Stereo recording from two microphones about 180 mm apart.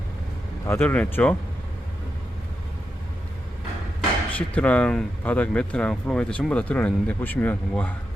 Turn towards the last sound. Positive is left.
turn(degrees=10)  # may be behind; listen again after turning